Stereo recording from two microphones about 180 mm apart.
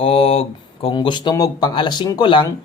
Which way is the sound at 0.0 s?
30° left (ahead or behind).